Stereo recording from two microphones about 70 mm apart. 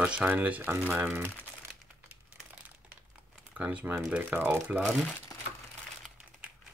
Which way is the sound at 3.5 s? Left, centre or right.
Right.